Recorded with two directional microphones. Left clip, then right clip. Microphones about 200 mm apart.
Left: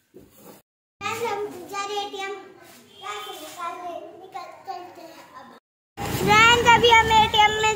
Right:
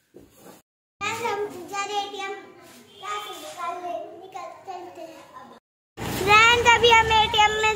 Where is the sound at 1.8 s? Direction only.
Centre (ahead or behind).